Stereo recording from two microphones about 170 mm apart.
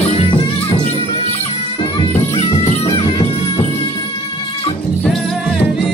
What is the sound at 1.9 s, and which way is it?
Music, 35° left (ahead or behind).